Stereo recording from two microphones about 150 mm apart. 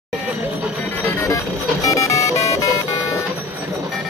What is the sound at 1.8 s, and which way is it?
Music, 20° left (ahead or behind).